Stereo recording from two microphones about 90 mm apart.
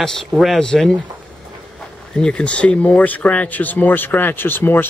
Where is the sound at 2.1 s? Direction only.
10° left (ahead or behind).